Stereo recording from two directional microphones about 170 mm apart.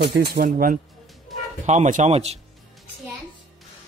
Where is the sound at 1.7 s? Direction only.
45° right (ahead or behind).